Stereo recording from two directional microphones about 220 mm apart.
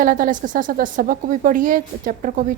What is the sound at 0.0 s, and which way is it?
A woman's voice, 40° right (ahead or behind).